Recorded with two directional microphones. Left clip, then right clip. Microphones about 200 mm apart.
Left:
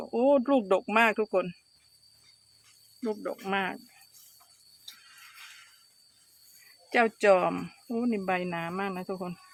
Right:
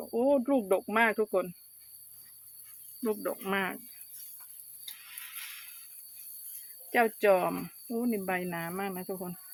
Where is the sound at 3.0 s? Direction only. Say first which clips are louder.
Right 1 dB; centre (ahead or behind).